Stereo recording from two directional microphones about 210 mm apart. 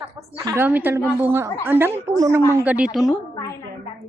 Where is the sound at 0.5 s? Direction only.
10° right (ahead or behind).